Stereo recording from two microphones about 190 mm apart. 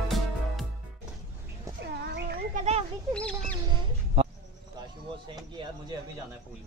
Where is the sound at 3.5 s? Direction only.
25° right (ahead or behind).